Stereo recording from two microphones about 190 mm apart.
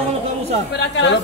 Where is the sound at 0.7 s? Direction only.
70° left (ahead or behind).